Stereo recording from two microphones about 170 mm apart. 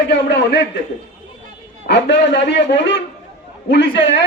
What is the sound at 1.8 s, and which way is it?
A man's voice, 90° left.